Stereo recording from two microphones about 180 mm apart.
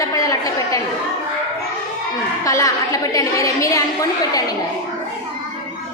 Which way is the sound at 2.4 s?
20° left (ahead or behind).